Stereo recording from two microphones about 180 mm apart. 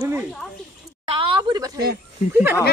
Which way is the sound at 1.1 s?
30° right (ahead or behind).